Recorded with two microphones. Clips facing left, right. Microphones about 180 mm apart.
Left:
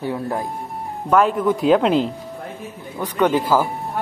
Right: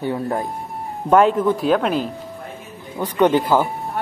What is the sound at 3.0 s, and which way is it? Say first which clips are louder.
Speech: right 2 dB; 15° right (ahead or behind).